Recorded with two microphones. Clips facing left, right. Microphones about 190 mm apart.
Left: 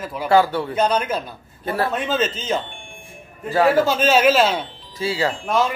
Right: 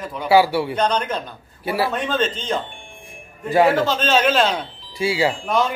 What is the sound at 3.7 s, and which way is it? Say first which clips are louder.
Speech: left 2 dB; 10° left (ahead or behind).